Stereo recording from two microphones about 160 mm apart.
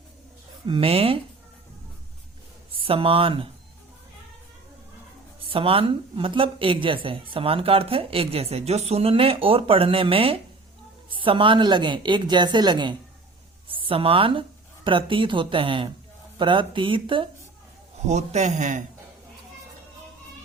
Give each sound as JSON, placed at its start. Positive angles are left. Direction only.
{"t": 0.7, "sound": "a woman's voice", "side_deg": -35}
{"t": 2.7, "sound": "speech", "side_deg": -35}
{"t": 5.5, "sound": "a woman's voice", "side_deg": -35}
{"t": 18.0, "sound": "a man's voice", "side_deg": -45}